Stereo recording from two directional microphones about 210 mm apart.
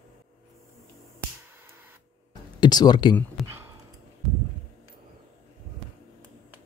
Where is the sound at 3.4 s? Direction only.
Centre (ahead or behind).